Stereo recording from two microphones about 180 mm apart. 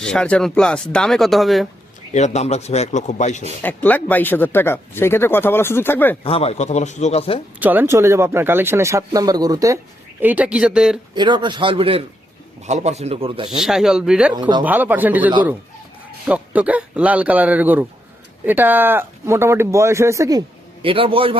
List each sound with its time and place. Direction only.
0.0 s speech: 5° left (ahead or behind)
2.1 s speech: 40° left (ahead or behind)
3.6 s speech: 10° left (ahead or behind)
6.2 s speech: 35° left (ahead or behind)
7.6 s speech: 10° right (ahead or behind)
10.2 s speech: 10° right (ahead or behind)
11.1 s a man's voice: 25° right (ahead or behind)
13.5 s speech: centre (ahead or behind)
20.8 s speech: 30° right (ahead or behind)